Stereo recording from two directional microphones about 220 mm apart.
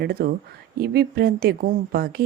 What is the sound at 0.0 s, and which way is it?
Speech, 45° right (ahead or behind).